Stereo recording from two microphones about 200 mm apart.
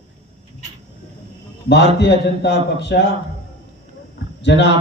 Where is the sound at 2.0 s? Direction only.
55° left (ahead or behind).